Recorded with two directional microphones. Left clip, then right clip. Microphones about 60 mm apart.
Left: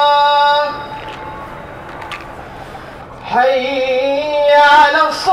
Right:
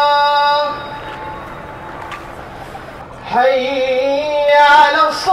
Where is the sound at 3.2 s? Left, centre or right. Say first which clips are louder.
Even; left.